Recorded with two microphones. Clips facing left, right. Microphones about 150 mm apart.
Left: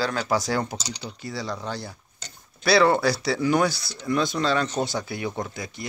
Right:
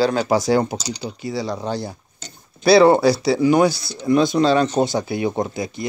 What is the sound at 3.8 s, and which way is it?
Speech, 35° right (ahead or behind).